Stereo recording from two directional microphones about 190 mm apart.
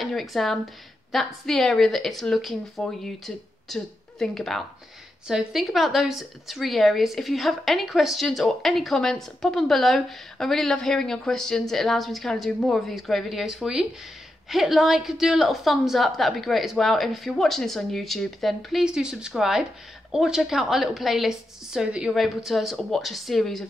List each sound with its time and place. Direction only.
0.0 s a woman's voice: centre (ahead or behind)